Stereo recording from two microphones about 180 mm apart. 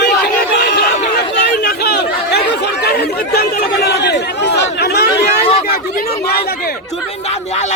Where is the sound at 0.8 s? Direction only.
65° left (ahead or behind).